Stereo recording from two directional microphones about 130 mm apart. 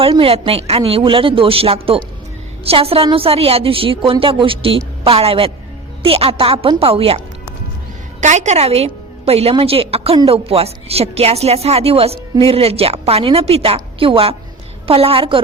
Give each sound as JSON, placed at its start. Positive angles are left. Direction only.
{"t": 0.2, "sound": "a woman's voice", "side_deg": -45}
{"t": 8.2, "sound": "a woman's voice", "side_deg": -65}